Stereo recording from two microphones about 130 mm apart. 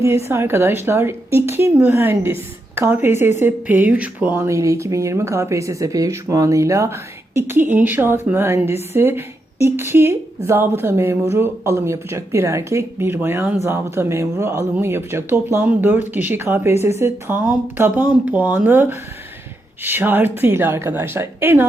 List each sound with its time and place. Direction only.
0.3 s speech: 20° right (ahead or behind)